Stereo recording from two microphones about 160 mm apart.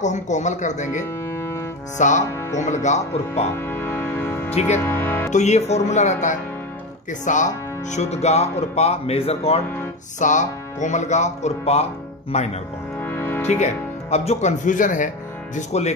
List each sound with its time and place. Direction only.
0.0 s speech: 50° left (ahead or behind)
1.3 s music: 15° left (ahead or behind)
2.0 s speech: 50° left (ahead or behind)
3.5 s music: 15° left (ahead or behind)
5.3 s speech: 45° left (ahead or behind)
10.1 s speech: 50° left (ahead or behind)
13.0 s music: 15° left (ahead or behind)
14.1 s speech: 45° left (ahead or behind)
15.5 s speech: 45° left (ahead or behind)